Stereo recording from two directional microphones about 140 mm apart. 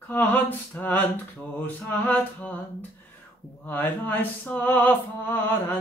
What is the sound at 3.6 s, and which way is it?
Mantra, 15° left (ahead or behind).